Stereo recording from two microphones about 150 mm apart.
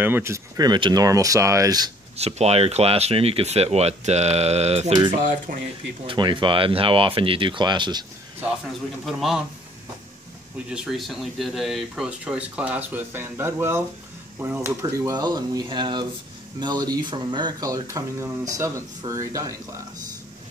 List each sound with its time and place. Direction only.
0.0 s speech: 15° right (ahead or behind)
2.1 s speech: 45° right (ahead or behind)
6.0 s speech: 35° right (ahead or behind)
9.0 s a man's voice: centre (ahead or behind)
10.7 s speech: 5° right (ahead or behind); by 19.5 s 20° right (ahead or behind)